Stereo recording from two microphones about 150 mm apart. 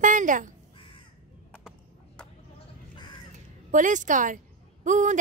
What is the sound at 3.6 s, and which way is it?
A woman's voice, 55° right (ahead or behind).